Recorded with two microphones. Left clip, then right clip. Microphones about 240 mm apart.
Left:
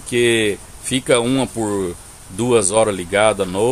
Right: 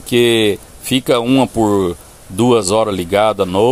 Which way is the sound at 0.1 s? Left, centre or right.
Right.